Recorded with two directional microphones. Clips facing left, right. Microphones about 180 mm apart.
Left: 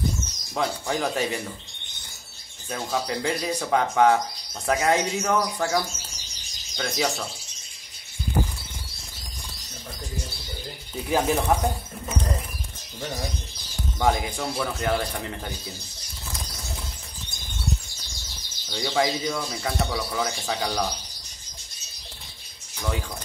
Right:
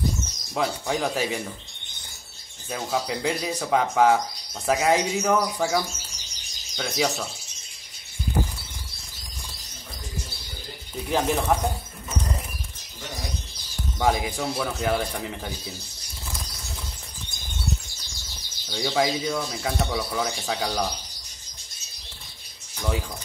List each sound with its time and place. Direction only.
0.6 s speech: centre (ahead or behind)
2.7 s speech: 5° right (ahead or behind)
11.1 s speech: 5° left (ahead or behind)
13.9 s speech: 5° right (ahead or behind)
18.7 s speech: 5° right (ahead or behind)